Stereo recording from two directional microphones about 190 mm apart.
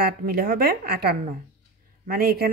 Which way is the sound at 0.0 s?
50° right (ahead or behind).